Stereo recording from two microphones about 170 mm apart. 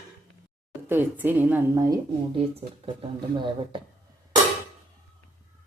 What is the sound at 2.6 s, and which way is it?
Speech, 30° right (ahead or behind).